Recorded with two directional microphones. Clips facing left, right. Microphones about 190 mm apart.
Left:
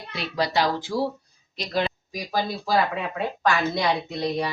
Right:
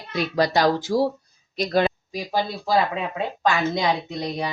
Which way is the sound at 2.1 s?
25° right (ahead or behind).